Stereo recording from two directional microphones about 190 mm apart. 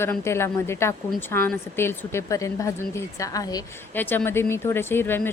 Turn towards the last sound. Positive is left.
turn(degrees=10)  # may be behind; listen again after turning